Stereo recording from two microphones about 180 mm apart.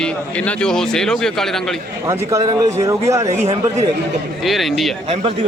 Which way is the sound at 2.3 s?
20° right (ahead or behind).